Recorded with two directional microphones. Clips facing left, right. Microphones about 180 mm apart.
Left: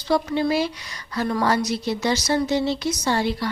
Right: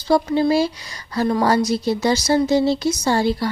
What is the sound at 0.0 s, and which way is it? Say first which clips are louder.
Speech: right 4 dB; 35° right (ahead or behind).